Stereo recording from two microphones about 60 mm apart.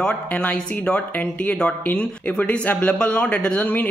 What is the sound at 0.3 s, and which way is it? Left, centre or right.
Speech, left.